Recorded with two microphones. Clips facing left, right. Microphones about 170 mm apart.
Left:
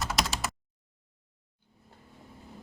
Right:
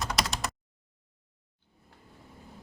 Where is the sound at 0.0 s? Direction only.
Centre (ahead or behind).